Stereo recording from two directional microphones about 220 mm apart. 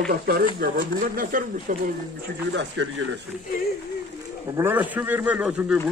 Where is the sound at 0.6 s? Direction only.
40° right (ahead or behind).